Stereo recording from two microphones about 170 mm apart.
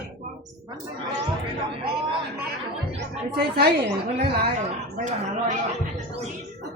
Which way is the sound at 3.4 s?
75° right (ahead or behind).